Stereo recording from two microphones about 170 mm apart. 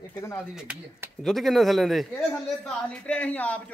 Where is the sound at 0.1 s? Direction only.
15° left (ahead or behind).